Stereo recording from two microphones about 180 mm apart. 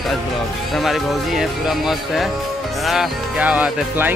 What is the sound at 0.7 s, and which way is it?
Speech, centre (ahead or behind).